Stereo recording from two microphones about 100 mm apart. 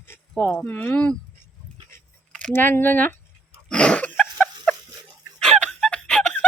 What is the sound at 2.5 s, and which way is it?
Speech, 20° left (ahead or behind).